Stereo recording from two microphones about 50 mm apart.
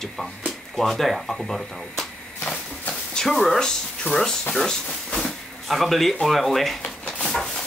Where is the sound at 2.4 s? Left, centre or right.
Centre.